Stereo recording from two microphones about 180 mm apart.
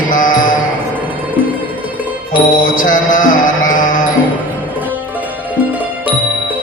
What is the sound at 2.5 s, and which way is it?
Music, 50° left (ahead or behind).